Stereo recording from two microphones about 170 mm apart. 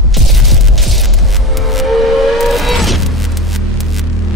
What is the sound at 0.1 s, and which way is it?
Music, centre (ahead or behind).